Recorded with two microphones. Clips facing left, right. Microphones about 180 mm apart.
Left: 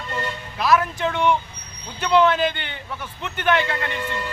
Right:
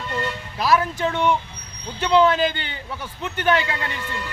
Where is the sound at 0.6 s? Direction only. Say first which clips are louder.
Even; 30° right (ahead or behind).